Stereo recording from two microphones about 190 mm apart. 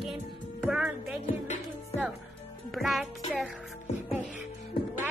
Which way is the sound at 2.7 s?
Centre (ahead or behind).